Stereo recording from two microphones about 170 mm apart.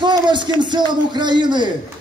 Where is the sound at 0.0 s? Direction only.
25° right (ahead or behind).